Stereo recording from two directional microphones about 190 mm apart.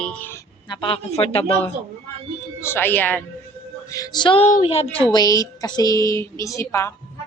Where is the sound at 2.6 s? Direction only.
10° left (ahead or behind).